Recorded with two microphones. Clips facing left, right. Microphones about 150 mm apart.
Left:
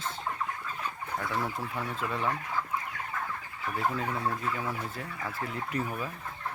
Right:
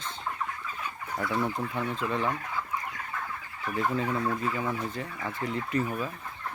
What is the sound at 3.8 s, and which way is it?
Fowl, 5° left (ahead or behind).